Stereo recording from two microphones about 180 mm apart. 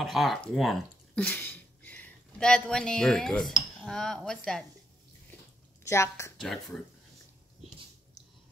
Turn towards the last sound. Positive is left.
turn(degrees=0)  # may be behind; listen again after turning